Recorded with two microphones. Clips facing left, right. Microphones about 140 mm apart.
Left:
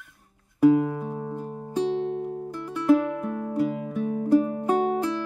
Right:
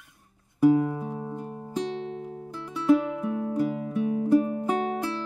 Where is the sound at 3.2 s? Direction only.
5° right (ahead or behind).